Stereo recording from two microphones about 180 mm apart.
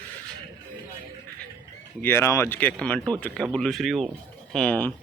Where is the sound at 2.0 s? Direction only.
15° left (ahead or behind).